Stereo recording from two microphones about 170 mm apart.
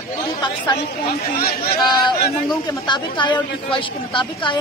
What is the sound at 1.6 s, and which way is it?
A woman's voice, 25° left (ahead or behind).